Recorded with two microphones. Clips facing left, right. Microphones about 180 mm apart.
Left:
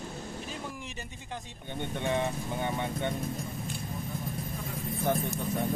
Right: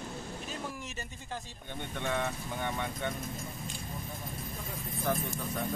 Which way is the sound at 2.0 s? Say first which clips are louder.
Left 3 dB; 15° left (ahead or behind).